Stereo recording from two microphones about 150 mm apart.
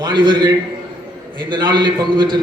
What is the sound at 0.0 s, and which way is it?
A man's voice, 30° right (ahead or behind).